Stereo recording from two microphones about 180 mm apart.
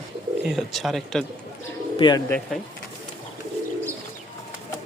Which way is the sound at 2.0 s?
25° left (ahead or behind).